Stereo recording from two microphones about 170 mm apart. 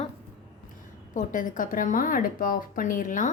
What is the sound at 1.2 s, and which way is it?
A woman's voice, 50° left (ahead or behind).